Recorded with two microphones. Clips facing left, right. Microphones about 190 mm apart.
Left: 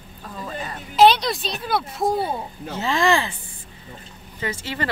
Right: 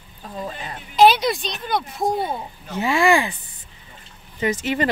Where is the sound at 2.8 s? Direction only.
10° right (ahead or behind).